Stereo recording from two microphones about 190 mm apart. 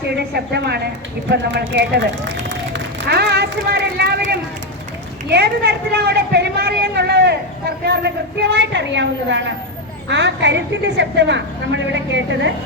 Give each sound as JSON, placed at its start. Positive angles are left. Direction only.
{"t": 0.2, "sound": "speech", "side_deg": -60}
{"t": 2.5, "sound": "a sound", "side_deg": -65}
{"t": 5.3, "sound": "a woman's voice", "side_deg": -60}